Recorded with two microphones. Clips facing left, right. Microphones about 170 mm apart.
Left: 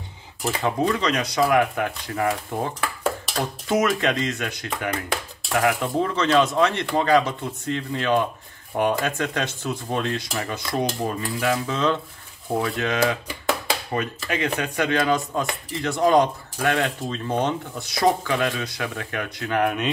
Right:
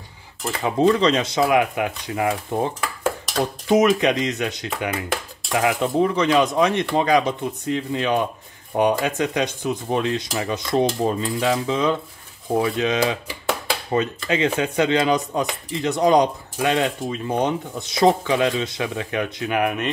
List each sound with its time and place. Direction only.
0.4 s speech: centre (ahead or behind)
0.7 s speech: 30° right (ahead or behind)
19.6 s speech: 5° right (ahead or behind)